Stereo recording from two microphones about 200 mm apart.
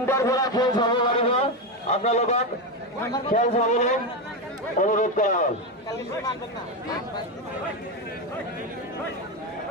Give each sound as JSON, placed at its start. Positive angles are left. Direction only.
{"t": 0.0, "sound": "a man's voice", "side_deg": 15}